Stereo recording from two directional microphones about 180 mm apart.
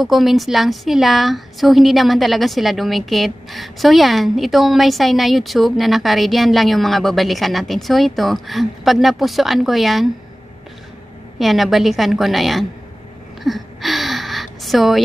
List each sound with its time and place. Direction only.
0.0 s a woman's voice: centre (ahead or behind)
11.3 s a woman's voice: centre (ahead or behind)
13.4 s gasp: centre (ahead or behind)